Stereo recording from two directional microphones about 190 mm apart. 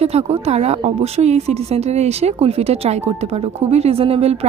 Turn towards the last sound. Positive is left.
turn(degrees=-30)  # may be behind; listen again after turning